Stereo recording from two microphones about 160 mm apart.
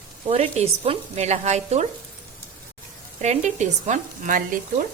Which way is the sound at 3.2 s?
45° right (ahead or behind).